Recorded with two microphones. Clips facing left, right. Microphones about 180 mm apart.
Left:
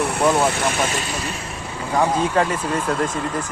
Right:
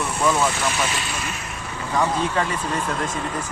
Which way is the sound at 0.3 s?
55° left (ahead or behind).